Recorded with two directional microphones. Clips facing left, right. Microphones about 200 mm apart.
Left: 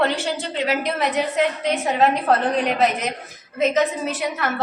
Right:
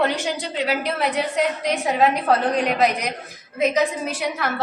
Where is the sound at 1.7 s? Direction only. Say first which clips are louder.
Right 1 dB; centre (ahead or behind).